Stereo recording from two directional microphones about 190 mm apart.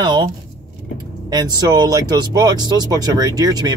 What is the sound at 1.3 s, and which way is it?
Speech, 20° right (ahead or behind).